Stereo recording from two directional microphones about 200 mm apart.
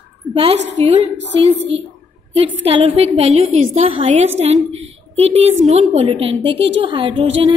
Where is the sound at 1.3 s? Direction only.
60° right (ahead or behind).